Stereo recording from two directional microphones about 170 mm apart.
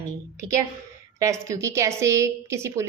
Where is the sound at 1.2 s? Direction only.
15° right (ahead or behind).